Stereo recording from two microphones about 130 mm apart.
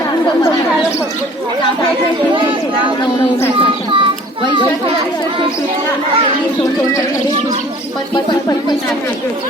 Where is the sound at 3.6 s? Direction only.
45° right (ahead or behind).